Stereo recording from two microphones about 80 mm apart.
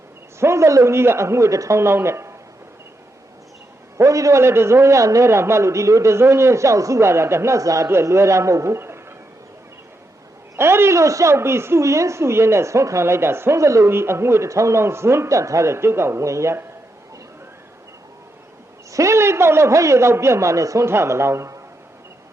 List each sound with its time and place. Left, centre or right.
0.3 s a woman's voice: right
3.9 s a woman's voice: right
10.6 s a woman's voice: right
18.9 s a woman's voice: right